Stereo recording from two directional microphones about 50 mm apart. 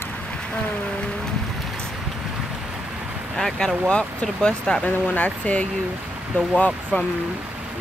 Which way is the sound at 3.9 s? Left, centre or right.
Left.